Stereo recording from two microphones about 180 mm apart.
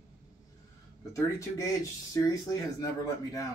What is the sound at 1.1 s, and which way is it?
Speech, 15° left (ahead or behind).